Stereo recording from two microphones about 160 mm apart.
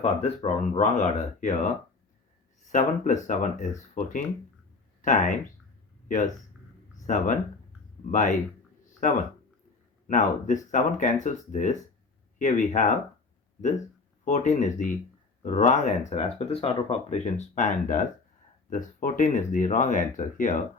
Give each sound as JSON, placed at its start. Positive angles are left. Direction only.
{"t": 0.0, "sound": "speech", "side_deg": 40}
{"t": 2.7, "sound": "speech", "side_deg": 50}
{"t": 10.1, "sound": "speech", "side_deg": 50}
{"t": 14.3, "sound": "speech", "side_deg": 45}